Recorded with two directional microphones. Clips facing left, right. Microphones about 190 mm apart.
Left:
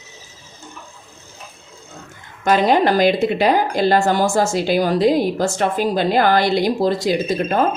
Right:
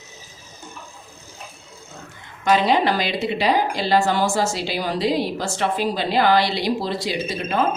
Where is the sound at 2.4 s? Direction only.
50° left (ahead or behind).